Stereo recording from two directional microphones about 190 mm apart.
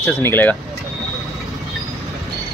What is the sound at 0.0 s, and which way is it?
Speech, 10° left (ahead or behind).